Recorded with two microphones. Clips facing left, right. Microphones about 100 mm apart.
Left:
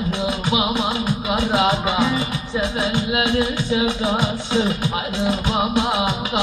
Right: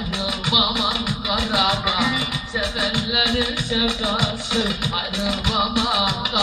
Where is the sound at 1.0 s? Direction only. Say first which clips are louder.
Left 3 dB; 30° left (ahead or behind).